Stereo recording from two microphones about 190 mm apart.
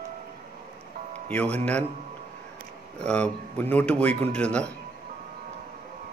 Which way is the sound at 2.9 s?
5° left (ahead or behind).